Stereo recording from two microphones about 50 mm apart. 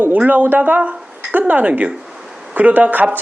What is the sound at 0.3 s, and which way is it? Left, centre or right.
Speech, right.